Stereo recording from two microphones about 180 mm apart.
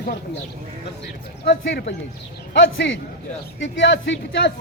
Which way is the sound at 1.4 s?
65° left (ahead or behind).